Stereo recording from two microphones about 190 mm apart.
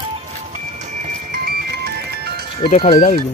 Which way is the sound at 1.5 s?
55° right (ahead or behind).